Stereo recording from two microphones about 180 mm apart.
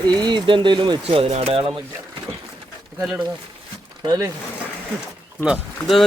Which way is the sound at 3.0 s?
Centre (ahead or behind).